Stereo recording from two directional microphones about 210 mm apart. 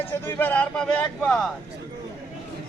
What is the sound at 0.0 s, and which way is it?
Speech, 10° left (ahead or behind).